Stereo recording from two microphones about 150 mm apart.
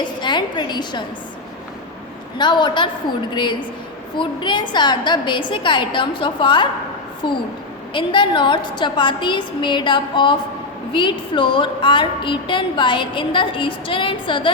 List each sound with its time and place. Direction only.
0.0 s a woman's voice: 30° left (ahead or behind)
2.4 s a woman's voice: 30° left (ahead or behind)
7.9 s a woman's voice: 30° left (ahead or behind)